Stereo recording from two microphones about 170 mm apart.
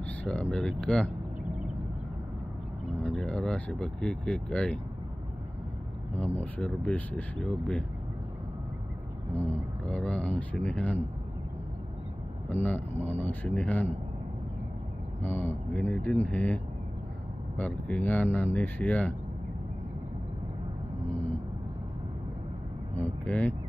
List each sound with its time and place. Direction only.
0.0 s speech: 10° left (ahead or behind)
3.0 s speech: 5° left (ahead or behind)
6.1 s speech: 10° left (ahead or behind)
9.3 s speech: 10° left (ahead or behind)
12.4 s speech: 10° left (ahead or behind)
15.2 s speech: 10° left (ahead or behind)
22.9 s speech: 10° left (ahead or behind)